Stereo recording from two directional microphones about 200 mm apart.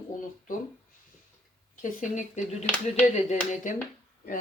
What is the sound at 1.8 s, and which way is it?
Speech, 40° left (ahead or behind).